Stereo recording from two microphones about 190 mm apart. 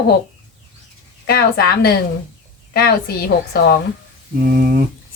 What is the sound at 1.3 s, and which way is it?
Speech, 55° left (ahead or behind).